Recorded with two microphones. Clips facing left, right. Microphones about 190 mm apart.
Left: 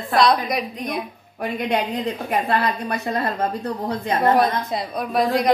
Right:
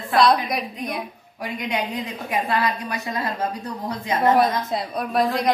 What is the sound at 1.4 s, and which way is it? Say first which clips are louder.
A woman's voice: left 4 dB; 55° left (ahead or behind).